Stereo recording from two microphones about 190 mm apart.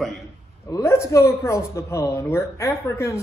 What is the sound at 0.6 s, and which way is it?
Speech, 15° left (ahead or behind).